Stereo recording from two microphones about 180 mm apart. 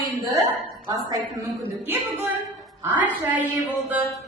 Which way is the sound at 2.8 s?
10° right (ahead or behind).